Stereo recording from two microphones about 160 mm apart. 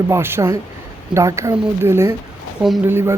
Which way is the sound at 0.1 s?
15° right (ahead or behind).